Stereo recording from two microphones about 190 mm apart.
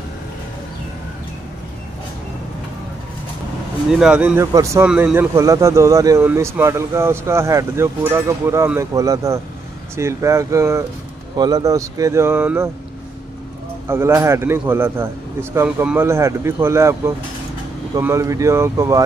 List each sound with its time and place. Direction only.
4.0 s a man's voice: 5° right (ahead or behind)
13.8 s a man's voice: 15° right (ahead or behind)